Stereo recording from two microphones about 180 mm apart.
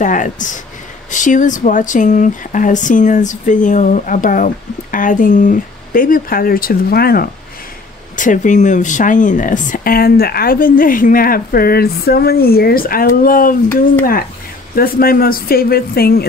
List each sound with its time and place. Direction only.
0.0 s speech: 45° left (ahead or behind)
8.2 s speech: 45° left (ahead or behind)
14.8 s speech: 55° left (ahead or behind)